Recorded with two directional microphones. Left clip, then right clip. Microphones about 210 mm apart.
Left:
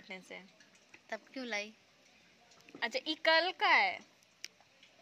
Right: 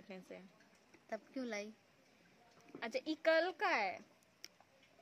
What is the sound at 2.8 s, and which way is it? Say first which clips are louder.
Speech: left 6 dB; 5° right (ahead or behind).